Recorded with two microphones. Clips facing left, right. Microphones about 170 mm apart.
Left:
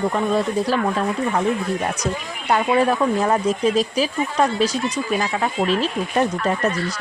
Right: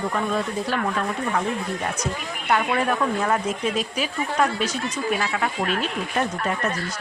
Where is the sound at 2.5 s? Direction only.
35° left (ahead or behind).